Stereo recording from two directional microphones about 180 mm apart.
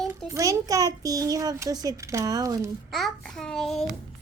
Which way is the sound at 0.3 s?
20° right (ahead or behind).